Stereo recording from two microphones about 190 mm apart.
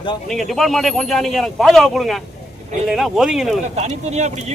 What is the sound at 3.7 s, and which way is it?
Speech, 35° right (ahead or behind).